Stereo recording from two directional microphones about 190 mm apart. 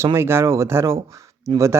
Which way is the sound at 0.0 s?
15° right (ahead or behind).